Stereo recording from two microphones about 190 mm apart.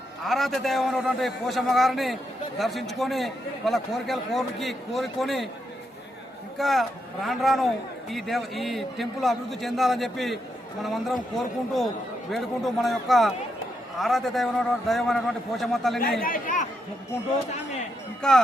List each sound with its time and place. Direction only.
0.3 s a man's voice: centre (ahead or behind)
6.6 s a man's voice: centre (ahead or behind)
16.2 s speech: 45° left (ahead or behind)
18.2 s speech: 5° left (ahead or behind)